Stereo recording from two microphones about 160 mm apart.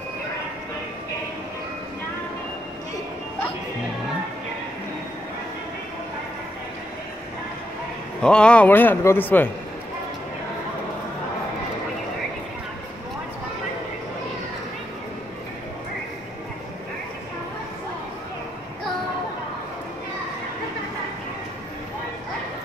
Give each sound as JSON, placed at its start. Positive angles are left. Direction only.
{"t": 8.2, "sound": "a man's voice", "side_deg": 5}